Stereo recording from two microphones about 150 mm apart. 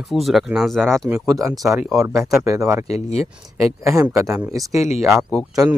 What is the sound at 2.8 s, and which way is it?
Speech, 45° left (ahead or behind).